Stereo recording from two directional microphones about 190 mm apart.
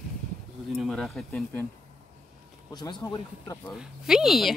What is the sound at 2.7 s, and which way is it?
Speech, 20° left (ahead or behind).